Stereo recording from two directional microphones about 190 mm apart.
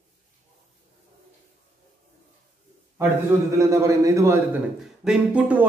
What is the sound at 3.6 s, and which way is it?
A man's voice, 15° right (ahead or behind).